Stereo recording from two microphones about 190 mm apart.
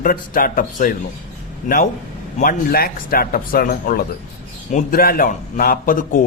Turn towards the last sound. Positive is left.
turn(degrees=45)  # may be behind; listen again after turning